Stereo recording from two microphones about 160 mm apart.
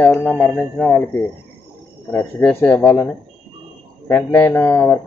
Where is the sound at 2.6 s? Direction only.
5° left (ahead or behind).